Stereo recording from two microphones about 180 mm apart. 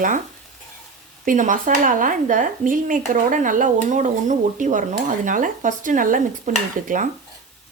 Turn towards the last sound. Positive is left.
turn(degrees=-45)  # may be behind; listen again after turning